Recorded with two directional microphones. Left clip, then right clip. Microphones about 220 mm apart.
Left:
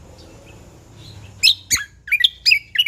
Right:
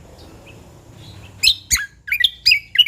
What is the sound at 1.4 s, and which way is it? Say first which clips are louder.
Bird: even; centre (ahead or behind).